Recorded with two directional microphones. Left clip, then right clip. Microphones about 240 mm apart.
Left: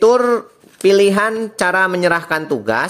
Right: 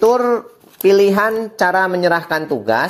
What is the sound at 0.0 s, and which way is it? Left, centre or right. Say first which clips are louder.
Speech: left 1 dB; centre.